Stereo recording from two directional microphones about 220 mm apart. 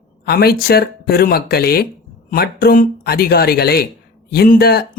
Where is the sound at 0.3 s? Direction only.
45° left (ahead or behind).